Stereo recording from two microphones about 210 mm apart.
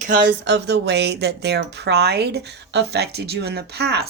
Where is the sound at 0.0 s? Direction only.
40° right (ahead or behind).